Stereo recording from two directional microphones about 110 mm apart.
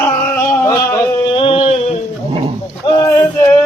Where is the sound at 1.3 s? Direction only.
55° left (ahead or behind).